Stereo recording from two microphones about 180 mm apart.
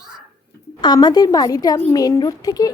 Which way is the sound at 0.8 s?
25° left (ahead or behind).